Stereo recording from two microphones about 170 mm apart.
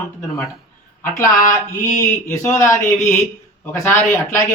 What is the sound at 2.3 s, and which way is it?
Speech, 15° left (ahead or behind).